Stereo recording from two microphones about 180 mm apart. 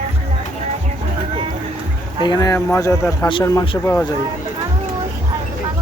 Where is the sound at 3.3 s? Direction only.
25° left (ahead or behind).